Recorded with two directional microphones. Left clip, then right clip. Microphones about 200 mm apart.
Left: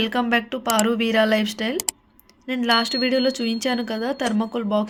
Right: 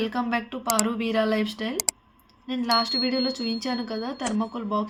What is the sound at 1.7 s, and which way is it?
Speech, centre (ahead or behind).